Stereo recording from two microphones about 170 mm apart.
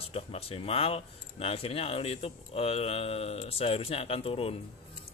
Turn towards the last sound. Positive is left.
turn(degrees=35)  # may be behind; listen again after turning